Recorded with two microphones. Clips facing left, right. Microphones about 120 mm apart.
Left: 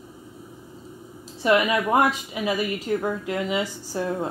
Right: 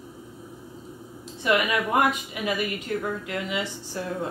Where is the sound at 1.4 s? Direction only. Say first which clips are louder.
Left 3 dB; 35° left (ahead or behind).